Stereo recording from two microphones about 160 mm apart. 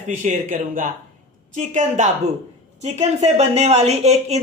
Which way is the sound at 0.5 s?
55° right (ahead or behind).